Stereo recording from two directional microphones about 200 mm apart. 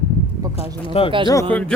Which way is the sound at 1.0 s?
30° left (ahead or behind).